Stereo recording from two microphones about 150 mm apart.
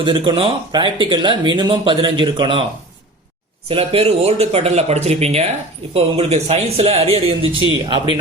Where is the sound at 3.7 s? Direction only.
40° right (ahead or behind).